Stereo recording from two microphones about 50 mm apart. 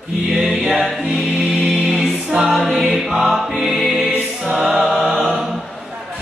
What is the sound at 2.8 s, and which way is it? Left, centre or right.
Music, centre.